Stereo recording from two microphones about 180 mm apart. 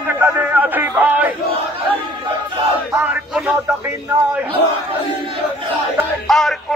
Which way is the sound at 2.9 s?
5° right (ahead or behind).